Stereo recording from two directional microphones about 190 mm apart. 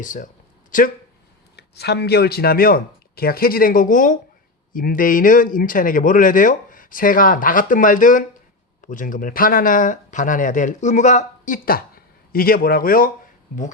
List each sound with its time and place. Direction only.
0.0 s speech: 45° left (ahead or behind)
1.5 s speech: 60° left (ahead or behind)